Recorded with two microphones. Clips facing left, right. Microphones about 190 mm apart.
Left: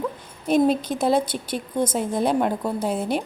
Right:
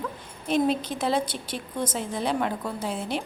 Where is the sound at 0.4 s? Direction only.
45° left (ahead or behind).